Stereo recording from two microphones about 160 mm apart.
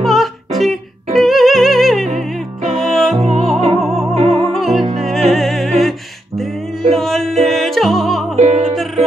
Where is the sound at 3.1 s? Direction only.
40° right (ahead or behind).